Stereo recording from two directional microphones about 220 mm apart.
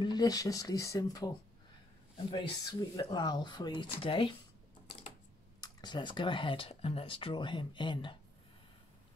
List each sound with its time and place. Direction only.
0.0 s speech: 20° left (ahead or behind)
5.6 s speech: 20° left (ahead or behind)